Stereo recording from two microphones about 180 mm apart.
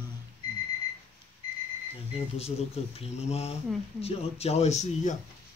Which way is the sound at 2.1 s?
35° left (ahead or behind).